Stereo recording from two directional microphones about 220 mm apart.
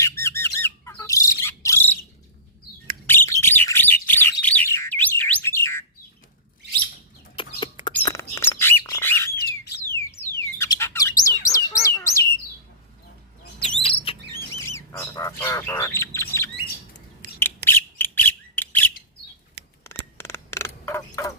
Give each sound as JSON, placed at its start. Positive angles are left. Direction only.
{"t": 0.0, "sound": "bird", "side_deg": 10}
{"t": 3.1, "sound": "bird", "side_deg": 10}
{"t": 7.4, "sound": "chicken", "side_deg": 20}
{"t": 8.0, "sound": "bird", "side_deg": 10}
{"t": 9.6, "sound": "alarm", "side_deg": 10}
{"t": 10.6, "sound": "bird", "side_deg": 10}
{"t": 11.4, "sound": "chirp", "side_deg": 15}
{"t": 13.7, "sound": "bird", "side_deg": 25}
{"t": 14.5, "sound": "bird", "side_deg": 15}
{"t": 17.2, "sound": "bird", "side_deg": -40}
{"t": 17.7, "sound": "bird", "side_deg": 10}
{"t": 20.1, "sound": "a sound", "side_deg": 10}